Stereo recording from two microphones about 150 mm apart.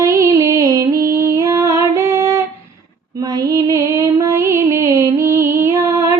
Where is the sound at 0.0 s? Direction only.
20° right (ahead or behind).